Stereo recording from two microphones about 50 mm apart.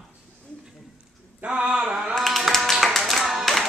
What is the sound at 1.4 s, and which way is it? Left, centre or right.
Speech, right.